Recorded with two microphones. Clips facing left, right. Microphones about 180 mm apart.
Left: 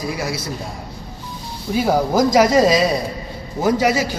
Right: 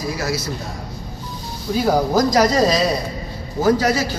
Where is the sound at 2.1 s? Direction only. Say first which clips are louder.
Left 4 dB; 5° left (ahead or behind).